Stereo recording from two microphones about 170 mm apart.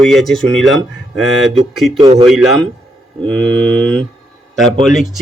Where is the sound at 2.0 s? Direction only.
25° right (ahead or behind).